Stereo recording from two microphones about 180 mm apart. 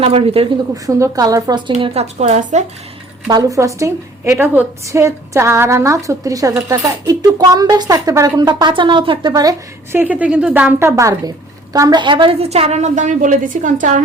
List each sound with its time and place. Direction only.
0.0 s a woman's voice: 35° right (ahead or behind)
0.9 s a woman's voice: 20° right (ahead or behind)
1.8 s a woman's voice: 35° right (ahead or behind)
3.2 s a woman's voice: 20° right (ahead or behind)
7.1 s a woman's voice: 20° right (ahead or behind); by 14.0 s 45° right (ahead or behind)